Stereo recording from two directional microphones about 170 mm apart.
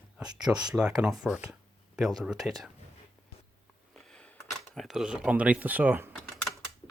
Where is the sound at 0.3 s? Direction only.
25° right (ahead or behind).